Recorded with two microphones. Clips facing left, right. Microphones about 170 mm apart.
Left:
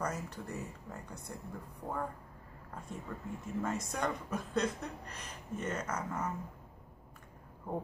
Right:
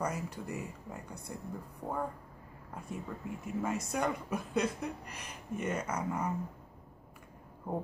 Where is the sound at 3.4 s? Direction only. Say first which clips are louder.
Right 2 dB; 10° right (ahead or behind).